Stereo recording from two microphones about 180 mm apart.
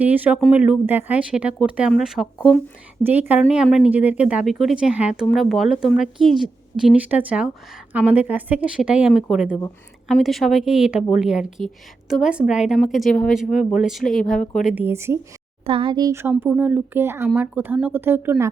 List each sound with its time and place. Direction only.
0.0 s a woman's voice: 10° right (ahead or behind)
14.8 s speech: 15° right (ahead or behind)
15.6 s speech: 30° right (ahead or behind); by 18.5 s 15° right (ahead or behind)